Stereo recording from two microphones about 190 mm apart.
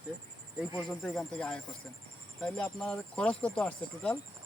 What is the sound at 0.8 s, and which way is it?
Speech, centre (ahead or behind).